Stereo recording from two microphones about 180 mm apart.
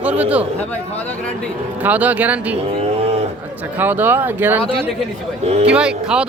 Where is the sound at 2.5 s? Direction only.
35° right (ahead or behind).